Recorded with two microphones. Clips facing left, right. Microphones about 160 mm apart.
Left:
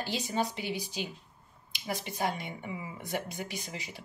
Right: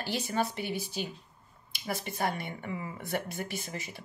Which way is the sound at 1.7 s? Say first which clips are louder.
Right 1 dB; 15° left (ahead or behind).